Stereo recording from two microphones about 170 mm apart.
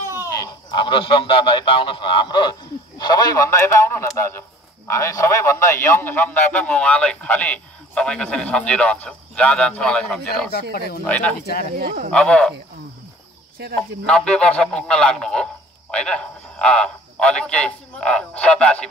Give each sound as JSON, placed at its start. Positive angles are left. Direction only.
{"t": 0.0, "sound": "a sound", "side_deg": -15}
{"t": 0.3, "sound": "a man's voice", "side_deg": 25}
{"t": 10.5, "sound": "speech", "side_deg": 65}
{"t": 11.1, "sound": "a man's voice", "side_deg": 10}
{"t": 11.7, "sound": "speech", "side_deg": -60}
{"t": 12.1, "sound": "speech", "side_deg": 5}
{"t": 14.0, "sound": "a man's voice", "side_deg": 5}